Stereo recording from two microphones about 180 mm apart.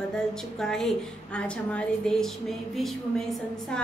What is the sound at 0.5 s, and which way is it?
A woman's voice, 5° left (ahead or behind).